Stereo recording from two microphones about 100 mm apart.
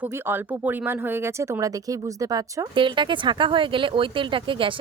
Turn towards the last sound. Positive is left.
turn(degrees=-55)  # may be behind; listen again after turning